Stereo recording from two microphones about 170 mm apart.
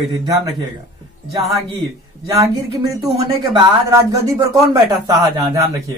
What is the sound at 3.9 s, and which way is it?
Speech, 20° right (ahead or behind).